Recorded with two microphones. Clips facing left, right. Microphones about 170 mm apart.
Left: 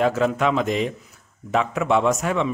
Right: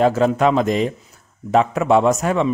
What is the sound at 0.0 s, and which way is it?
A man's voice, 35° right (ahead or behind).